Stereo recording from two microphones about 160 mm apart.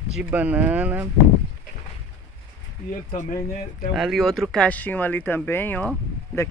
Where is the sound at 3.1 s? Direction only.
50° left (ahead or behind).